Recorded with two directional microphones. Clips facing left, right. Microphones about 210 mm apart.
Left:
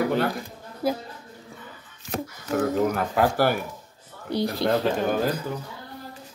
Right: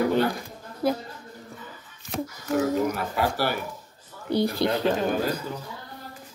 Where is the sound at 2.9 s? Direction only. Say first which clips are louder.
Left 4 dB; 50° left (ahead or behind).